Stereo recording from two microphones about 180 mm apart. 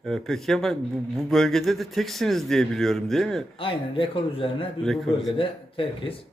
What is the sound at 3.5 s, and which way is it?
Speech, 30° left (ahead or behind).